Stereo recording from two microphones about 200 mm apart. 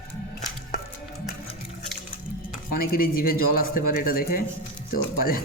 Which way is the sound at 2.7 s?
45° left (ahead or behind).